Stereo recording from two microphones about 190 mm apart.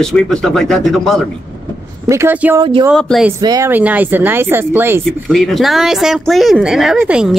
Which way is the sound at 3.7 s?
10° right (ahead or behind).